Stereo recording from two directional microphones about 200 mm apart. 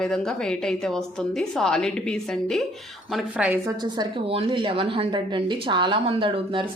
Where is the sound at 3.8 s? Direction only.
25° right (ahead or behind).